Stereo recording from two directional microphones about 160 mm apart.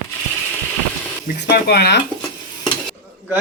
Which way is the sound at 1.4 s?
85° left.